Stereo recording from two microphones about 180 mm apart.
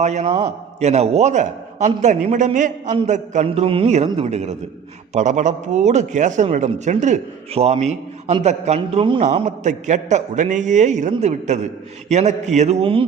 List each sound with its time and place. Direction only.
0.0 s a man's voice: 40° right (ahead or behind)